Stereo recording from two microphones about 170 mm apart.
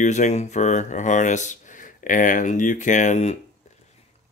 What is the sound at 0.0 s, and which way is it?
Speech, 45° left (ahead or behind).